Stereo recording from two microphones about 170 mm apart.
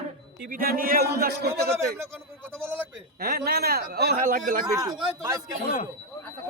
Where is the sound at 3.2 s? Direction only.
65° right (ahead or behind).